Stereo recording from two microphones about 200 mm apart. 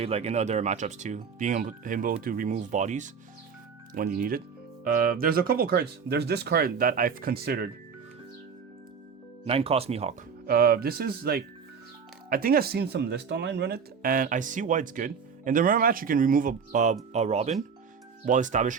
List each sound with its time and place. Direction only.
0.0 s speech: 30° right (ahead or behind); by 7.7 s 50° right (ahead or behind)
9.5 s speech: 30° right (ahead or behind)
10.4 s speech: 50° right (ahead or behind)